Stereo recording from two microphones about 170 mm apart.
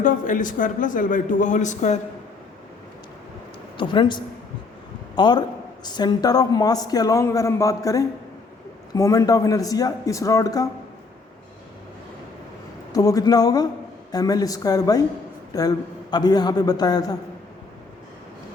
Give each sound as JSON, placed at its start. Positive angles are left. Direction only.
{"t": 0.0, "sound": "a man's voice", "side_deg": 50}
{"t": 3.8, "sound": "a woman's voice", "side_deg": 25}
{"t": 12.9, "sound": "a woman's voice", "side_deg": 20}